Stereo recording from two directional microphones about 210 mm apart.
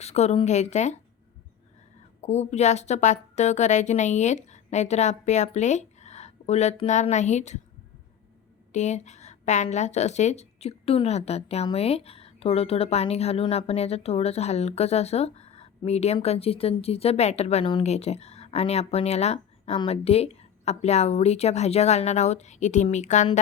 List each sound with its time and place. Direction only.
0.0 s a woman's voice: 30° left (ahead or behind)
2.2 s a woman's voice: 30° left (ahead or behind)
8.7 s a woman's voice: 35° left (ahead or behind)